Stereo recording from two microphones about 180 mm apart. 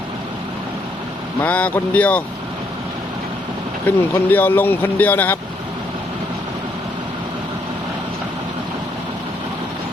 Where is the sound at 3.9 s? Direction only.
10° left (ahead or behind).